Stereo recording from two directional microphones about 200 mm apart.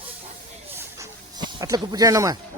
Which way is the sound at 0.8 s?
15° right (ahead or behind).